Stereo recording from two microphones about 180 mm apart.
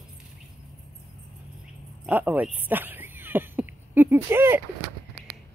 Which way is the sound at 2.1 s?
10° right (ahead or behind).